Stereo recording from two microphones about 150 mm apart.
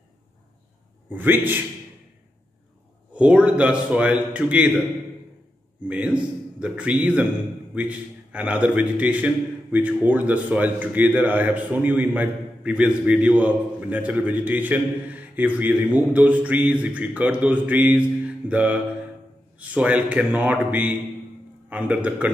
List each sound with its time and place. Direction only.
1.1 s a man's voice: 15° right (ahead or behind)
3.1 s a man's voice: 10° right (ahead or behind)
5.9 s a man's voice: 10° right (ahead or behind)